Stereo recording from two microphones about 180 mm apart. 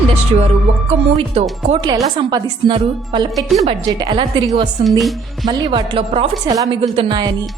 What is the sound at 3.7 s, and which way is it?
A woman's voice, 25° right (ahead or behind).